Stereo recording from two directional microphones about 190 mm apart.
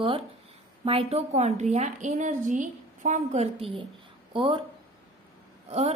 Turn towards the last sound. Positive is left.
turn(degrees=-35)  # may be behind; listen again after turning